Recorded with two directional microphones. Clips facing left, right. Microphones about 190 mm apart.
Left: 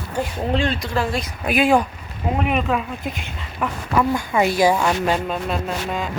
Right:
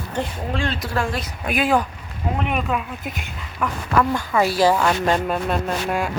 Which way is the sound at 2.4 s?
Centre (ahead or behind).